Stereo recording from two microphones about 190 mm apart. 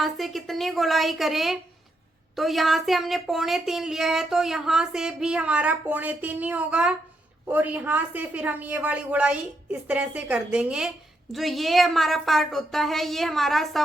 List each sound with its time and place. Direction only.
0.0 s a woman's voice: centre (ahead or behind)